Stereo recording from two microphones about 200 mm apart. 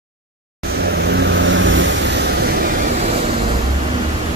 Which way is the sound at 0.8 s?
55° right (ahead or behind).